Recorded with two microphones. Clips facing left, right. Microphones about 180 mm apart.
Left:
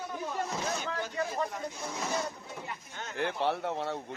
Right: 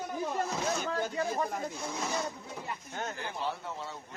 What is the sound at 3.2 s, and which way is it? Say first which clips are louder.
Speech: left 6 dB; 70° left (ahead or behind).